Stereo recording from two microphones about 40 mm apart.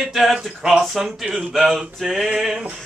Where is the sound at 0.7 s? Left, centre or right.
Centre.